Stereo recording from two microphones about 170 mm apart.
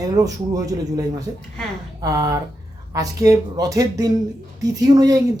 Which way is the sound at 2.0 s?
20° right (ahead or behind).